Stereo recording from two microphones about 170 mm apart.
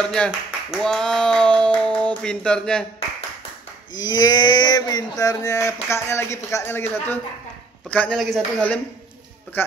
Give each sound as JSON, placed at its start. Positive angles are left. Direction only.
{"t": 0.0, "sound": "speech", "side_deg": 5}
{"t": 3.9, "sound": "a sound", "side_deg": 25}
{"t": 7.9, "sound": "speech", "side_deg": 5}